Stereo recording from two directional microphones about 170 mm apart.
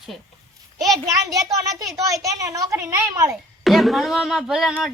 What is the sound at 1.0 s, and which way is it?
A woman's voice, 20° right (ahead or behind).